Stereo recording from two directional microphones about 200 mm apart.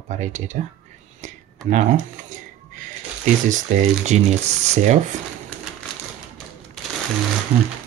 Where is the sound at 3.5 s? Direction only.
40° right (ahead or behind).